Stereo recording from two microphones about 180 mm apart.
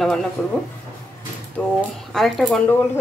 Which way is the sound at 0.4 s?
5° left (ahead or behind).